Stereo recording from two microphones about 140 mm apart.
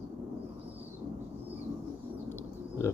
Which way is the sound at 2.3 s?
20° left (ahead or behind).